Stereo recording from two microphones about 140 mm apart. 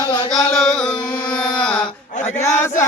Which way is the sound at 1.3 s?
5° left (ahead or behind).